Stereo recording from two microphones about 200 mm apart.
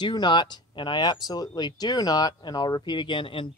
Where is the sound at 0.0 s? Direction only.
20° left (ahead or behind).